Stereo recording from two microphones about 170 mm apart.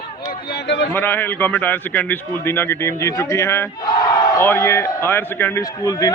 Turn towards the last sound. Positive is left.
turn(degrees=20)  # may be behind; listen again after turning